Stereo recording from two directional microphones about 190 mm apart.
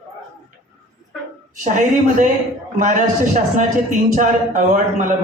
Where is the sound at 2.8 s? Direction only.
40° right (ahead or behind).